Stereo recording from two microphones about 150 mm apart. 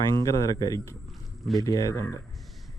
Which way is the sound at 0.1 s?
25° left (ahead or behind).